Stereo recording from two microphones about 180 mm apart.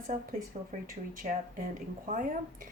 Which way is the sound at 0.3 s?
50° right (ahead or behind).